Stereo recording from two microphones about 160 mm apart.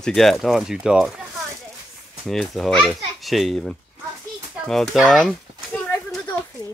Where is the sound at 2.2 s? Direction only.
Centre (ahead or behind).